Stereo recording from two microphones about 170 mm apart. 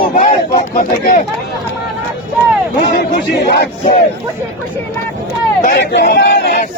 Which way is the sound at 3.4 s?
75° left (ahead or behind).